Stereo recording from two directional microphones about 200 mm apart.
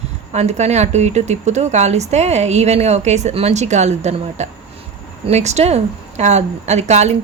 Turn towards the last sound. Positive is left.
turn(degrees=-35)  # may be behind; listen again after turning